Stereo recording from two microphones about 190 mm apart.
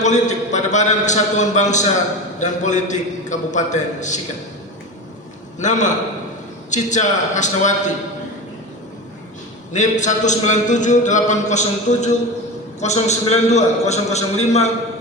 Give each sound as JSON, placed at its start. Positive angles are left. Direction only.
{"t": 0.0, "sound": "a man's voice", "side_deg": 40}
{"t": 5.5, "sound": "a man's voice", "side_deg": 40}
{"t": 9.7, "sound": "a man's voice", "side_deg": 40}